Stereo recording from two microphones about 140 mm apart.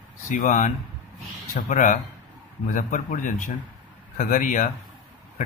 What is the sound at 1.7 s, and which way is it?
Speech, 70° left (ahead or behind).